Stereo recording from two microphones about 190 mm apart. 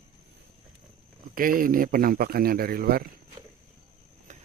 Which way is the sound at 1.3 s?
45° right (ahead or behind).